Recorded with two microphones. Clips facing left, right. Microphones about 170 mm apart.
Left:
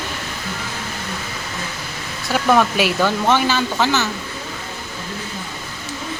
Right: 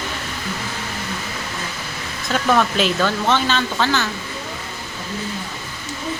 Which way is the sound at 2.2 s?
10° left (ahead or behind).